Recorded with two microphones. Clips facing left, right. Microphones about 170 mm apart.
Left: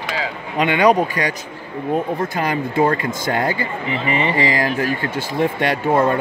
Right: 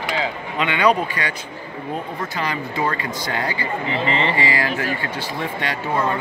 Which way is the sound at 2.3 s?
50° left (ahead or behind).